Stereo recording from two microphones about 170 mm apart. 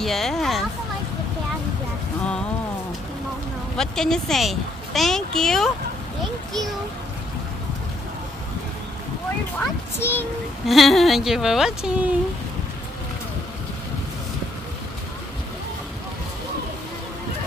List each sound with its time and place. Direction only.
0.0 s speech: centre (ahead or behind)
3.7 s speech: 5° left (ahead or behind)
9.9 s a child's voice: 15° left (ahead or behind)
10.7 s speech: centre (ahead or behind)